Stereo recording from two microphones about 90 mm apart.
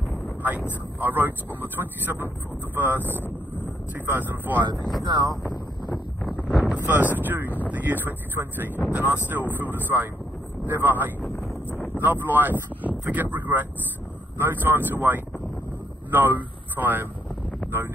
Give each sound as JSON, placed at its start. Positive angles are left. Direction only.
{"t": 0.4, "sound": "speech", "side_deg": -20}
{"t": 4.7, "sound": "speech", "side_deg": 0}
{"t": 5.0, "sound": "speech", "side_deg": -55}
{"t": 6.7, "sound": "speech", "side_deg": -20}
{"t": 11.7, "sound": "speech", "side_deg": 20}
{"t": 12.0, "sound": "speech", "side_deg": -20}